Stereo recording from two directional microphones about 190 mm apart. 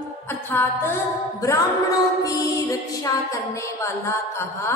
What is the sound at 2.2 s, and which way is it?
Music, 15° left (ahead or behind).